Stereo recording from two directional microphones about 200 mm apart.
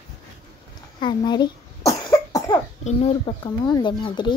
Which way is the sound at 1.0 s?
20° left (ahead or behind).